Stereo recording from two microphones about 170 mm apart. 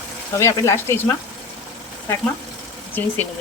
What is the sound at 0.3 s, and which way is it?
Speech, 15° left (ahead or behind).